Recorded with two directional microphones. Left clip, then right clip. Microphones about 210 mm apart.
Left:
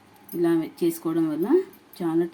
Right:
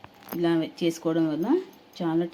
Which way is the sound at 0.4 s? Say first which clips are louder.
Left 2 dB; 15° right (ahead or behind).